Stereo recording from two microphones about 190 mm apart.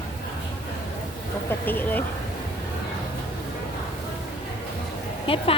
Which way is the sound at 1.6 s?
10° left (ahead or behind).